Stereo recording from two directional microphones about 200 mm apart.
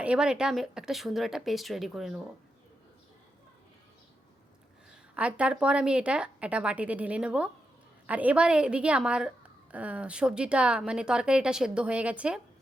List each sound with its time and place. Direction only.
0.0 s speech: 5° right (ahead or behind)
4.9 s speech: 5° right (ahead or behind)